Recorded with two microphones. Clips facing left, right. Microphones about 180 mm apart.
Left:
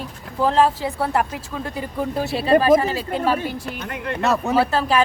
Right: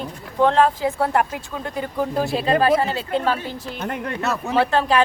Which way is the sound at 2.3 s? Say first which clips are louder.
Left 5 dB; 5° left (ahead or behind).